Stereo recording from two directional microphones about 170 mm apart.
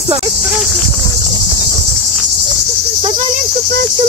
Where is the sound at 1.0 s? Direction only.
25° left (ahead or behind).